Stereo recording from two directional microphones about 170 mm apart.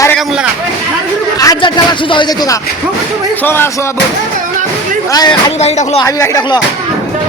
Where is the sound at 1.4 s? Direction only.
25° left (ahead or behind).